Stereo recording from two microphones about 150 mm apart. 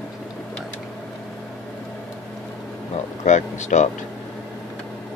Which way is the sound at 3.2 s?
50° left (ahead or behind).